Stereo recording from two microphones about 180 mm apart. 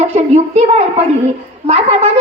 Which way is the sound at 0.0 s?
35° right (ahead or behind).